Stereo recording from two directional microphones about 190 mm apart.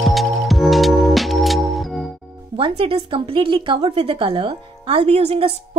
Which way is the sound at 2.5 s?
30° right (ahead or behind).